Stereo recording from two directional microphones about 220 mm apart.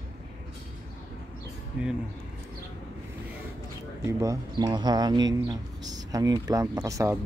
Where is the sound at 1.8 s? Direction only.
5° right (ahead or behind).